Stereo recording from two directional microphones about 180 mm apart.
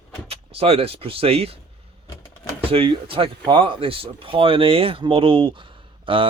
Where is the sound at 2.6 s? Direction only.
30° right (ahead or behind).